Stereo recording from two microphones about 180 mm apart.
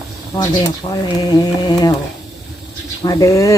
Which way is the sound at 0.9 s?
20° left (ahead or behind).